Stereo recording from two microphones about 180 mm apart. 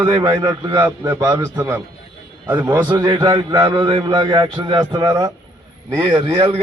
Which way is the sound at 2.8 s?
20° right (ahead or behind).